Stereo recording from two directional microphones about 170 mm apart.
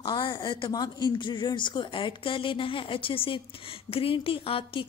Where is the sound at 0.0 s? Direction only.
30° left (ahead or behind).